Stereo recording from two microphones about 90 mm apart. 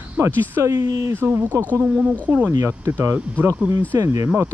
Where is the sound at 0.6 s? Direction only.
40° right (ahead or behind).